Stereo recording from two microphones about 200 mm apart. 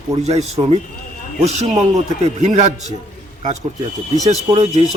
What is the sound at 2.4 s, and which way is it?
Speech, 35° right (ahead or behind).